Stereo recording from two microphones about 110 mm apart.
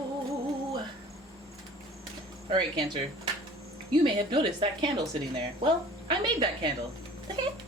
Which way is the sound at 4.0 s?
45° right (ahead or behind).